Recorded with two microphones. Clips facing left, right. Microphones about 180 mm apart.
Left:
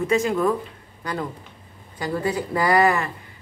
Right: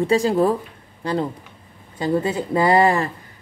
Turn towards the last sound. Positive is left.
turn(degrees=-30)  # may be behind; listen again after turning